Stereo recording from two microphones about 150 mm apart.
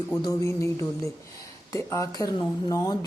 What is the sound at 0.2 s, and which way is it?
Speech, 20° left (ahead or behind).